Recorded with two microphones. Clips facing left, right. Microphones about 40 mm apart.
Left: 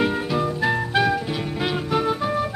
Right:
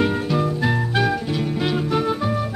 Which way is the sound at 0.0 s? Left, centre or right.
Centre.